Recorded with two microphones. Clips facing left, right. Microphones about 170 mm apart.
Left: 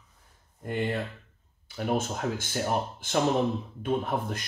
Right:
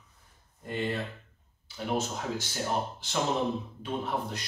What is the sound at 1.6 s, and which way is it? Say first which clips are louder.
A man's voice: left 3 dB; 55° left (ahead or behind).